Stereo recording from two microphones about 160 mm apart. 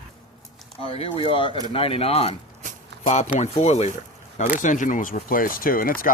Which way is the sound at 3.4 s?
45° left (ahead or behind).